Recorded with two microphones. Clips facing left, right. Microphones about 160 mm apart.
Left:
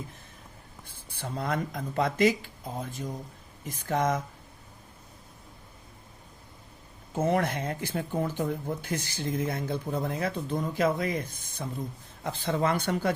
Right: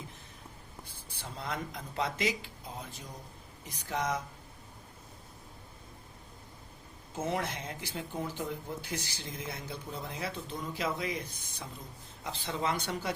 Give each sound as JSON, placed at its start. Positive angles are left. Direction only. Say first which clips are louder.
{"t": 1.2, "sound": "speech", "louder": "left 7 dB", "side_deg": 50}
{"t": 7.2, "sound": "speech", "louder": "left 8 dB", "side_deg": 55}